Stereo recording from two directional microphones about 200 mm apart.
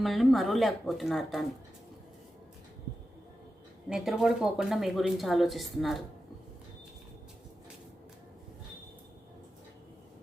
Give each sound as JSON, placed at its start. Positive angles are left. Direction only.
{"t": 0.0, "sound": "speech", "side_deg": 0}
{"t": 3.8, "sound": "speech", "side_deg": -5}